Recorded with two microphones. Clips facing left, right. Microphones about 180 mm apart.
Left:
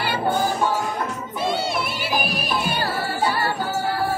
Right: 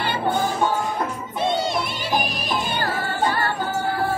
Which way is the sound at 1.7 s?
5° left (ahead or behind).